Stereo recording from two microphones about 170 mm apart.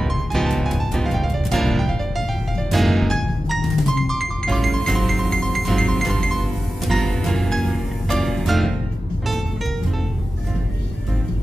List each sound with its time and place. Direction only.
0.0 s music: centre (ahead or behind)